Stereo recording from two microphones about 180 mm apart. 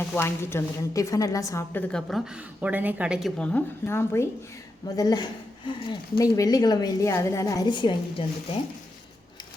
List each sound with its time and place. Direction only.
0.0 s a woman's voice: 10° left (ahead or behind)
1.9 s speech: 5° left (ahead or behind); by 7.9 s 25° left (ahead or behind)